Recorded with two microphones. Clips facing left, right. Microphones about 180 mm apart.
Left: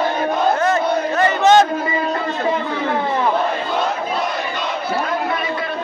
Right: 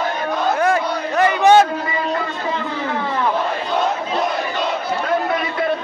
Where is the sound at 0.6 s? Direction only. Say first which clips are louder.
Left 1 dB; 10° right (ahead or behind).